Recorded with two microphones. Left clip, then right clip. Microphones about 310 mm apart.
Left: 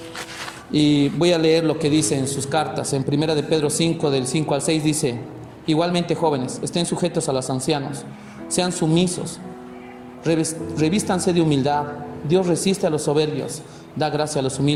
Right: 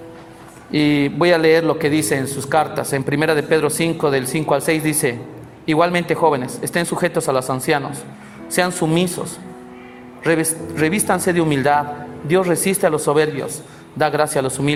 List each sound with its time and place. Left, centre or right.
0.7 s a man's voice: right
10.2 s a man's voice: right
14.0 s a man's voice: right